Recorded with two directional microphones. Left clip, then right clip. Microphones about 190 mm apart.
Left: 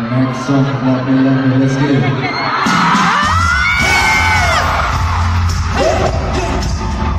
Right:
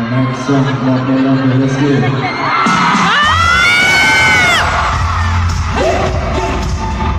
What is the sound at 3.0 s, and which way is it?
Music, centre (ahead or behind).